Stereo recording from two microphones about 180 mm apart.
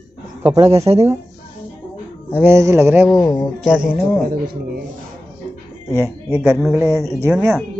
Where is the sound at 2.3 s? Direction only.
10° right (ahead or behind).